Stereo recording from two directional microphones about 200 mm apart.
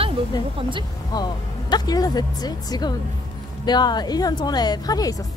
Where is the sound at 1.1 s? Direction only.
20° left (ahead or behind).